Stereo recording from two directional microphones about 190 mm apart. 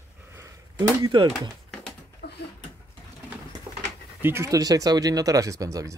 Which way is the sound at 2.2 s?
55° left (ahead or behind).